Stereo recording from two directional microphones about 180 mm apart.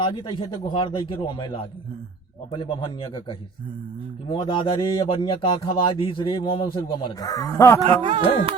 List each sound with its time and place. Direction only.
0.0 s speech: 30° left (ahead or behind)
7.9 s speech: 30° right (ahead or behind)